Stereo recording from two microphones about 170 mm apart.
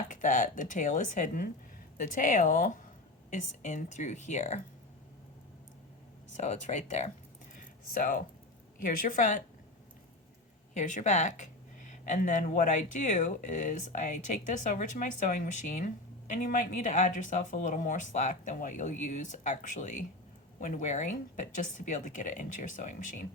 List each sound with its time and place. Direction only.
0.1 s speech: 50° left (ahead or behind)
6.3 s speech: 40° left (ahead or behind)
7.5 s a sound: 55° left (ahead or behind)
8.8 s speech: 50° left (ahead or behind)
10.8 s speech: 45° left (ahead or behind)